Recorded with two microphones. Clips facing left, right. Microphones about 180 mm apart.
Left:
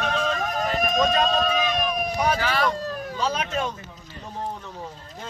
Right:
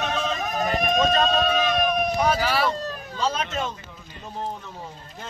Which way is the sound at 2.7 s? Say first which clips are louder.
Left 1 dB; 10° left (ahead or behind).